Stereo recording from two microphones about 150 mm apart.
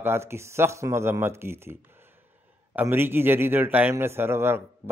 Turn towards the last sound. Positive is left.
turn(degrees=-15)  # may be behind; listen again after turning